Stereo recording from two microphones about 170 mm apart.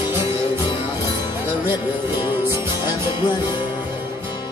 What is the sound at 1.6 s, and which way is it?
Music, 25° left (ahead or behind).